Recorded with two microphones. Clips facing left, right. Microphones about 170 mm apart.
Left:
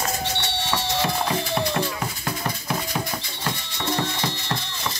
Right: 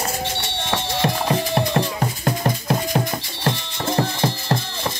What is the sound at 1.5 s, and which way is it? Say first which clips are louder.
Music: right 4 dB; 40° right (ahead or behind).